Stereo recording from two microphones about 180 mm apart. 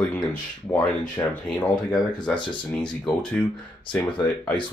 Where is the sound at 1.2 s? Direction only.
20° left (ahead or behind).